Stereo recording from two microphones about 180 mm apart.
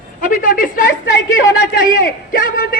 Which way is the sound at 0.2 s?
50° left (ahead or behind).